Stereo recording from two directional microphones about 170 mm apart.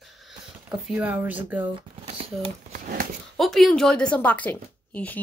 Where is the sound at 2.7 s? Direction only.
60° right (ahead or behind).